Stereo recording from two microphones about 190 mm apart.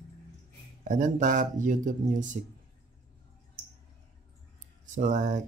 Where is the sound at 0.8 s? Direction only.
40° right (ahead or behind).